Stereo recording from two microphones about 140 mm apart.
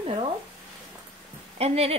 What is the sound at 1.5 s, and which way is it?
Speech, 45° right (ahead or behind).